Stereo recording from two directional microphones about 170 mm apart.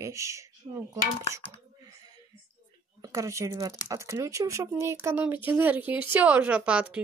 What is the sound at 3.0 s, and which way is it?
Speech, 20° right (ahead or behind).